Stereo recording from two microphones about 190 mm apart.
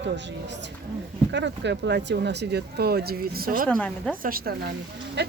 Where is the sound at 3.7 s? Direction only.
5° left (ahead or behind).